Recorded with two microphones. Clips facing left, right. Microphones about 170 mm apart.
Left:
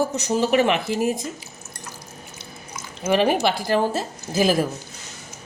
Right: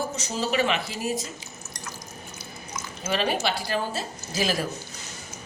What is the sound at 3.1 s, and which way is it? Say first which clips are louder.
A woman's voice: left 7 dB; 55° left (ahead or behind).